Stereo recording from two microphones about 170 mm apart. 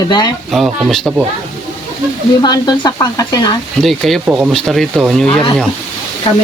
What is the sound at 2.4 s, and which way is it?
Speech, 25° left (ahead or behind).